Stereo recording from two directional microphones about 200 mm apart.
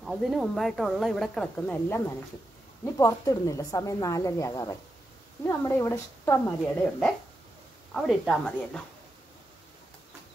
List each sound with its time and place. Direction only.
0.0 s speech: centre (ahead or behind)